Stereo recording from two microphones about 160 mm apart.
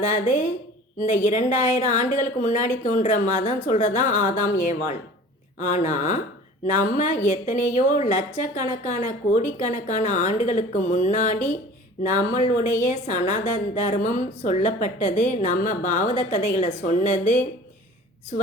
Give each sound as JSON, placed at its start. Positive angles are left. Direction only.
{"t": 0.0, "sound": "a woman's voice", "side_deg": 50}